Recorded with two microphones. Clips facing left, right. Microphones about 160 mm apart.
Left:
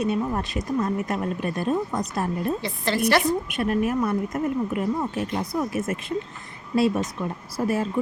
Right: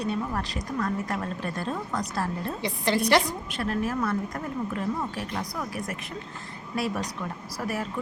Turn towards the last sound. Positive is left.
turn(degrees=25)  # may be behind; listen again after turning